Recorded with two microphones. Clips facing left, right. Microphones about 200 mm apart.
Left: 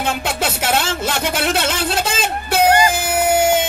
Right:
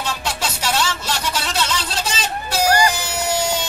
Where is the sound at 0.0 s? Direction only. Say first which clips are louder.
Left 5 dB; 55° left (ahead or behind).